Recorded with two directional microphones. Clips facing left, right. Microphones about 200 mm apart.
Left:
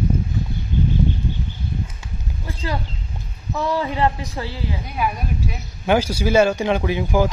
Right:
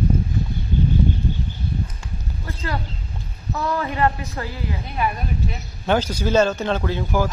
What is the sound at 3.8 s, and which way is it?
Speech, 15° left (ahead or behind).